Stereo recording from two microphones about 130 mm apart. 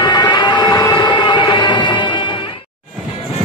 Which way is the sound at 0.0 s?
30° left (ahead or behind).